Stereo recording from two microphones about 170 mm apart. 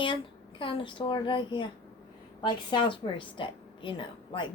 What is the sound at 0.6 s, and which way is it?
A woman's voice, 30° left (ahead or behind).